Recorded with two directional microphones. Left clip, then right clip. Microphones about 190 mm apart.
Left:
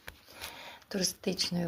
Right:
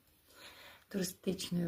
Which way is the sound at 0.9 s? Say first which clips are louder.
Left 6 dB; 20° right (ahead or behind).